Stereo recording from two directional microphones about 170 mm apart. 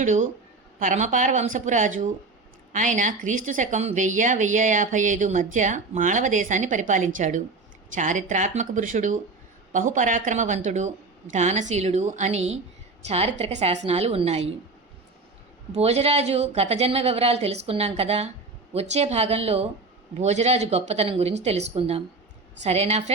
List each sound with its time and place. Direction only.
0.0 s a woman's voice: 45° right (ahead or behind)
15.7 s a woman's voice: 40° right (ahead or behind)